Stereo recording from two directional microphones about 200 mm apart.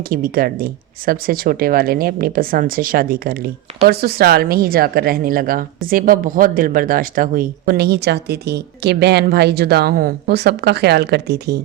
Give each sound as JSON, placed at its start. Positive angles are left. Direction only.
{"t": 0.0, "sound": "speech", "side_deg": -45}